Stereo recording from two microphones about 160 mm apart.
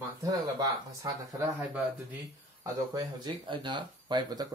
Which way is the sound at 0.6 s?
20° right (ahead or behind).